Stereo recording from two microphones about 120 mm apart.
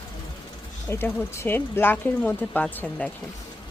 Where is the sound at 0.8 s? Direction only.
20° left (ahead or behind).